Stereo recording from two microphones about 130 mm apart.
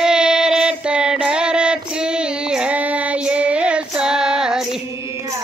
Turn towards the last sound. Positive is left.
turn(degrees=-5)  # may be behind; listen again after turning